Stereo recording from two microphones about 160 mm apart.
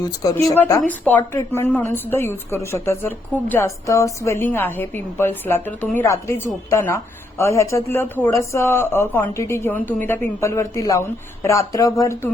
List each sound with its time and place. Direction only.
0.0 s speech: 20° left (ahead or behind)
0.8 s a woman's voice: 10° left (ahead or behind)